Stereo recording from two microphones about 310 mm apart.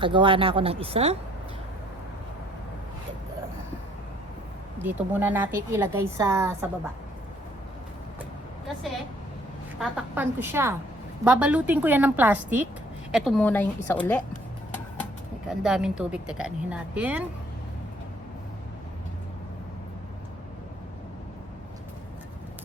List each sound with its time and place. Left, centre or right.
0.0 s a woman's voice: centre
4.8 s a woman's voice: centre
9.7 s a woman's voice: centre
15.4 s speech: centre